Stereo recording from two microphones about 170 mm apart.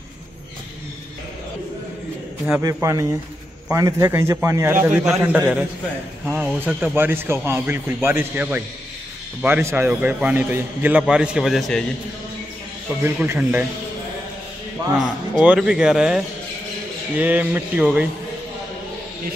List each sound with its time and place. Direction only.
2.4 s a man's voice: 15° right (ahead or behind); by 11.8 s centre (ahead or behind)
13.0 s a man's voice: 10° right (ahead or behind)
15.0 s a man's voice: 5° right (ahead or behind)